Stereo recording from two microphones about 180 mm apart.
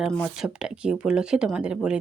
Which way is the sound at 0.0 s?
5° right (ahead or behind).